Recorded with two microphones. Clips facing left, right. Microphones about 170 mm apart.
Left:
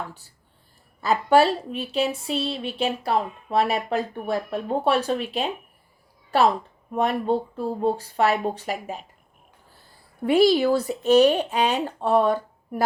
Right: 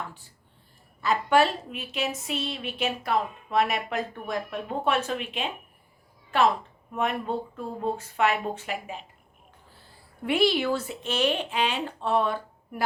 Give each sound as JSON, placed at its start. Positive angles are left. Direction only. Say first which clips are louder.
{"t": 1.0, "sound": "a woman's voice", "louder": "left 4 dB", "side_deg": 35}
{"t": 10.2, "sound": "a woman's voice", "louder": "left 6 dB", "side_deg": 40}